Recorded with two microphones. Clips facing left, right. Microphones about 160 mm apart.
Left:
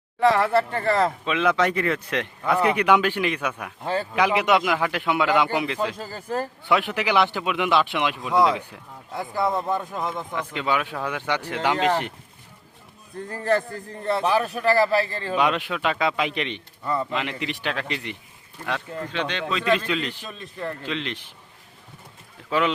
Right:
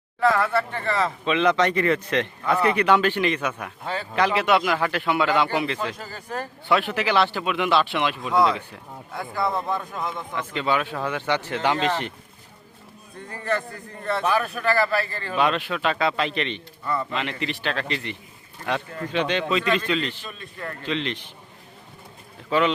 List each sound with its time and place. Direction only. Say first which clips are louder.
0.2 s speech: left 2 dB; 25° left (ahead or behind)
0.7 s speech: left 3 dB; 40° left (ahead or behind)
1.2 s a man's voice: right 1 dB; 5° left (ahead or behind)
6.0 s speech: left 4 dB; 35° left (ahead or behind)
6.7 s a man's voice: right 1 dB; 15° left (ahead or behind)
9.6 s speech: left 2 dB; 25° left (ahead or behind)
10.3 s a man's voice: right 2 dB; 10° left (ahead or behind)
13.3 s speech: left 4 dB; 35° left (ahead or behind)
15.4 s a man's voice: right 1 dB; 15° left (ahead or behind)
18.6 s speech: right 2 dB; 5° right (ahead or behind)
19.6 s a man's voice: left 1 dB; 5° left (ahead or behind)
22.4 s speech: right 2 dB; 5° left (ahead or behind)